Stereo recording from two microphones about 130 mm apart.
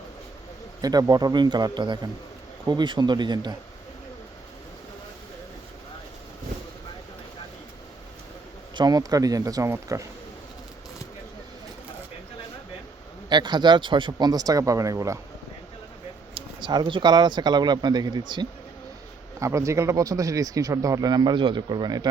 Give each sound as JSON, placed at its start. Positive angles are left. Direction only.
{"t": 0.8, "sound": "speech", "side_deg": -30}
{"t": 8.7, "sound": "speech", "side_deg": -30}
{"t": 13.3, "sound": "speech", "side_deg": -35}
{"t": 16.3, "sound": "speech", "side_deg": -35}
{"t": 19.4, "sound": "speech", "side_deg": -25}